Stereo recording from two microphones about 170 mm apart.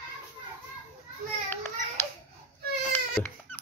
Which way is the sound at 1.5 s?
15° left (ahead or behind).